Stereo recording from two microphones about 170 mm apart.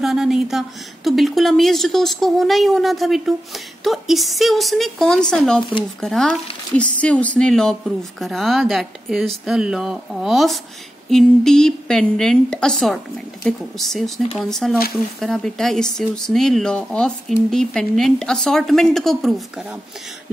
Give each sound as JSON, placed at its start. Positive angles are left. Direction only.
{"t": 0.0, "sound": "speech", "side_deg": 0}